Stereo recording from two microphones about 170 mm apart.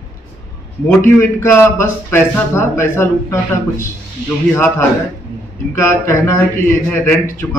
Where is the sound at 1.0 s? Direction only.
15° left (ahead or behind).